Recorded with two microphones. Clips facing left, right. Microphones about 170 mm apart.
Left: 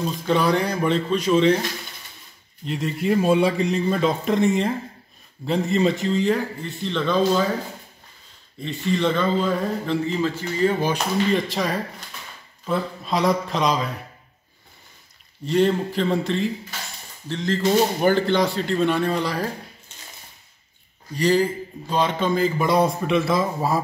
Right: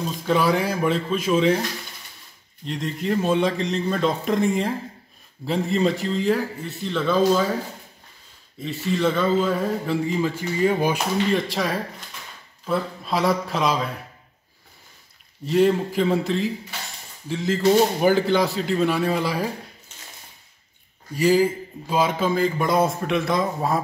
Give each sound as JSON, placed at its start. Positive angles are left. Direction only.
{"t": 0.3, "sound": "a man's voice", "side_deg": -5}
{"t": 2.6, "sound": "a man's voice", "side_deg": 5}
{"t": 8.5, "sound": "speech", "side_deg": -5}
{"t": 11.3, "sound": "a man's voice", "side_deg": 0}
{"t": 15.4, "sound": "a man's voice", "side_deg": -5}
{"t": 21.1, "sound": "a man's voice", "side_deg": -5}